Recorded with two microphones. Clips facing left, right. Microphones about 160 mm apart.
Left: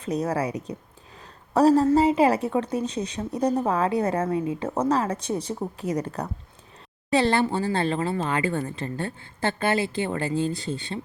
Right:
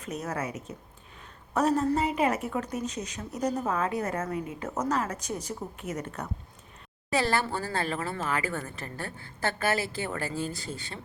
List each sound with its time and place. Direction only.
0.0 s a woman's voice: 35° left (ahead or behind)
7.2 s a woman's voice: 25° left (ahead or behind)